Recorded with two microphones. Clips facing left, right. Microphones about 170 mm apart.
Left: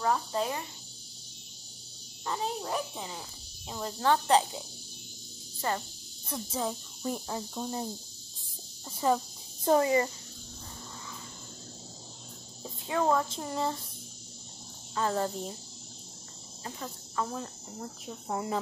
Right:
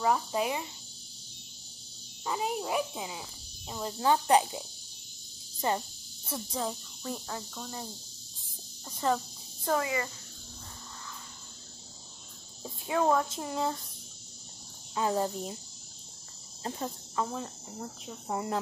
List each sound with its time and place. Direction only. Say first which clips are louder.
0.0 s a child's voice: right 1 dB; 10° right (ahead or behind)
2.2 s a child's voice: right 1 dB; 10° right (ahead or behind)
5.6 s speech: right 2 dB; 20° right (ahead or behind)
6.2 s cricket: left 1 dB; centre (ahead or behind)
7.0 s speech: left 6 dB; 20° left (ahead or behind)
8.8 s cricket: left 2 dB; 5° left (ahead or behind)
9.7 s speech: left 6 dB; 30° left (ahead or behind)
12.8 s cricket: right 1 dB; 5° right (ahead or behind)
15.0 s a child's voice: right 1 dB; 10° right (ahead or behind)
16.6 s cricket: right 5 dB; 35° right (ahead or behind)
17.3 s cricket: even; 5° right (ahead or behind)